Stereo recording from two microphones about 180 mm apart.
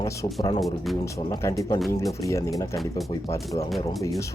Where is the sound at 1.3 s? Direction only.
15° left (ahead or behind).